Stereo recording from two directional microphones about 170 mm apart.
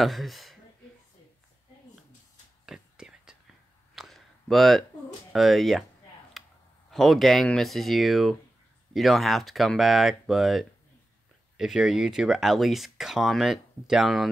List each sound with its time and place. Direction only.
0.0 s speech: centre (ahead or behind)
2.6 s whispering: 5° right (ahead or behind)
3.9 s a sound: centre (ahead or behind)
5.3 s speech: centre (ahead or behind)
6.4 s clicking: centre (ahead or behind)
6.9 s speech: centre (ahead or behind)